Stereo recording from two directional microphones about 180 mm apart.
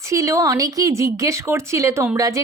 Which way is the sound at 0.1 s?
15° right (ahead or behind).